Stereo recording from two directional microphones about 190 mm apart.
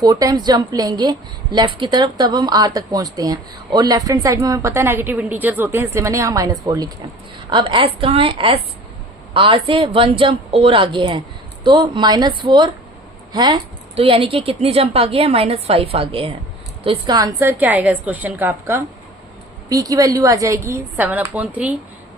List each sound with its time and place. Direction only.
0.0 s speech: 20° right (ahead or behind)
17.6 s speech: 10° right (ahead or behind)